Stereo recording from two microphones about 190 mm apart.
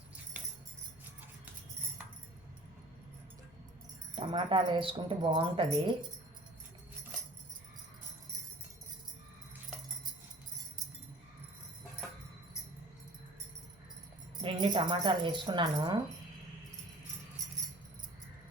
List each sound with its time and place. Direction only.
4.1 s speech: 25° right (ahead or behind)
14.4 s speech: 25° right (ahead or behind)